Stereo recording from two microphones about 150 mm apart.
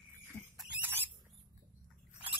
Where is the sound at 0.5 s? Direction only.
10° right (ahead or behind).